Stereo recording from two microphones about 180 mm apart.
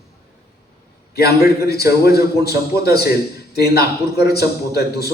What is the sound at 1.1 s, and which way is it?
A man's voice, 60° left (ahead or behind).